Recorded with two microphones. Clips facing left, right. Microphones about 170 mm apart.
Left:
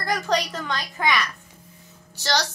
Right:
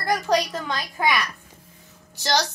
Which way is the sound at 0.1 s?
10° right (ahead or behind).